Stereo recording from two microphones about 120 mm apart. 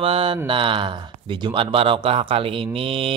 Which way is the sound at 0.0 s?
50° right (ahead or behind).